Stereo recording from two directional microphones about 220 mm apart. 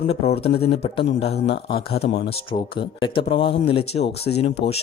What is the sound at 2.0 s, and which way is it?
Speech, 50° left (ahead or behind).